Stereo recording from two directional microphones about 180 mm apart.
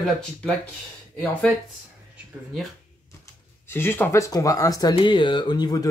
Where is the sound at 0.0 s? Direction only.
5° left (ahead or behind).